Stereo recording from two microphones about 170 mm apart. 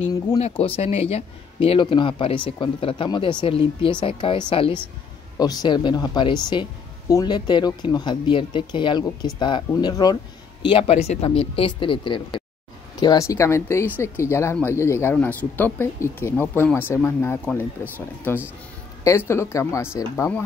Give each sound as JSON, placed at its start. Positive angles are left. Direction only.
{"t": 0.4, "sound": "speech", "side_deg": 35}